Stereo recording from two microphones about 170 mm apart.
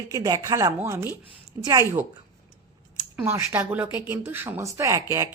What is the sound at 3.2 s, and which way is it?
Speech, 10° right (ahead or behind).